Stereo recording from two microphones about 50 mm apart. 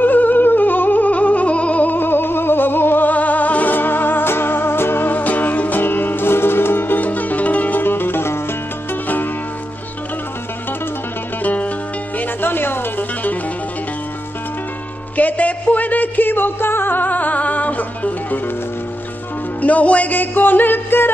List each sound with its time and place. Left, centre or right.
0.0 s music: left
9.0 s music: left
11.4 s music: left
12.2 s music: left
15.1 s music: left
19.6 s music: left